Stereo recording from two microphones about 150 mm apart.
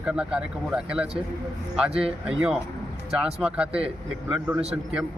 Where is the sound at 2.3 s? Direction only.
5° right (ahead or behind).